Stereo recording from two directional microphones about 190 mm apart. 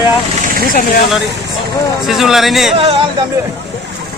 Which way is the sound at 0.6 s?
45° left (ahead or behind).